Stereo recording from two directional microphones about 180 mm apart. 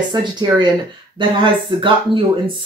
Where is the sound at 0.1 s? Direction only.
25° right (ahead or behind).